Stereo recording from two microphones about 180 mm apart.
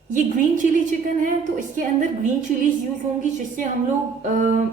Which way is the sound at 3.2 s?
45° right (ahead or behind).